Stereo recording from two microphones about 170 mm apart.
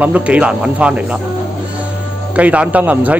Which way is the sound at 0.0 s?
10° right (ahead or behind).